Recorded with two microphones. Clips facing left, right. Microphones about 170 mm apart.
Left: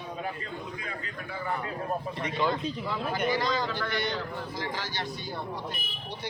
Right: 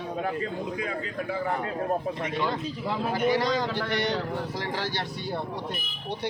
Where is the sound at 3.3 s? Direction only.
70° right (ahead or behind).